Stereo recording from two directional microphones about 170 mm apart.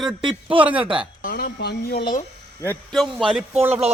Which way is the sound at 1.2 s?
70° left (ahead or behind).